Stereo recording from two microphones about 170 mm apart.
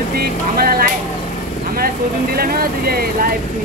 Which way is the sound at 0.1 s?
60° right (ahead or behind).